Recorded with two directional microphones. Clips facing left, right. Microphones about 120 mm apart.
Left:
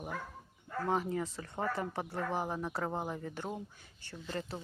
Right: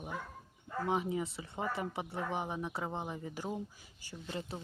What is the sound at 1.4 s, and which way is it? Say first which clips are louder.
Speech: left 2 dB; 5° right (ahead or behind).